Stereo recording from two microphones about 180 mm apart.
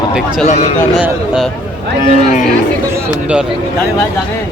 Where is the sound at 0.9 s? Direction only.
5° right (ahead or behind).